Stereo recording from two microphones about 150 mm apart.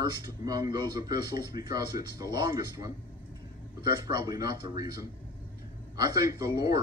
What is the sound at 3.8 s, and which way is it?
Speech, 25° right (ahead or behind).